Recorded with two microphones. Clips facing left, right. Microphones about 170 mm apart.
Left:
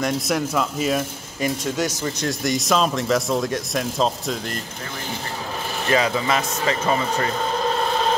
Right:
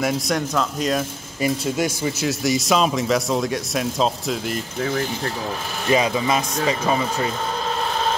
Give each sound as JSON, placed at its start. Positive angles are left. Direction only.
{"t": 0.0, "sound": "speech", "side_deg": 5}
{"t": 1.4, "sound": "speech", "side_deg": -10}
{"t": 5.9, "sound": "speech", "side_deg": -20}